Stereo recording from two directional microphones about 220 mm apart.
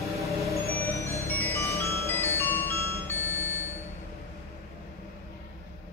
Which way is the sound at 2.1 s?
10° left (ahead or behind).